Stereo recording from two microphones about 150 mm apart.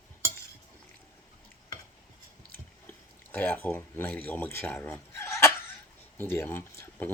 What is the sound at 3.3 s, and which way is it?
Speech, 10° left (ahead or behind).